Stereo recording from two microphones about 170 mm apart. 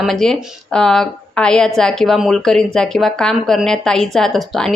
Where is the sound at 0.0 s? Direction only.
Centre (ahead or behind).